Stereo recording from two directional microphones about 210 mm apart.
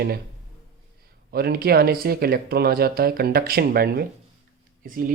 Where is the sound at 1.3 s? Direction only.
45° right (ahead or behind).